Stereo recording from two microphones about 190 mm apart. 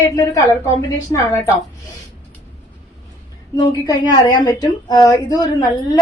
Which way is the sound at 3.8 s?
20° left (ahead or behind).